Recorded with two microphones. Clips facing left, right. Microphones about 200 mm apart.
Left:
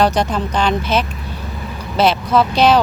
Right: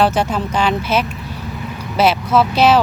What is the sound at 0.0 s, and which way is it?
Speech, 5° right (ahead or behind).